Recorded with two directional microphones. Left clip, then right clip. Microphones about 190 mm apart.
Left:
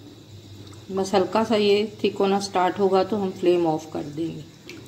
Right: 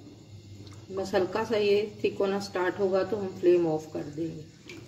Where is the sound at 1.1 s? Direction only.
35° left (ahead or behind).